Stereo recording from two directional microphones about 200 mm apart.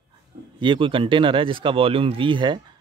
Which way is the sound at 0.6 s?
25° right (ahead or behind).